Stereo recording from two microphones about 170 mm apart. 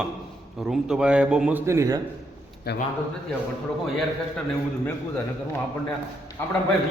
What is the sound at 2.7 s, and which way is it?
Speech, 75° left (ahead or behind).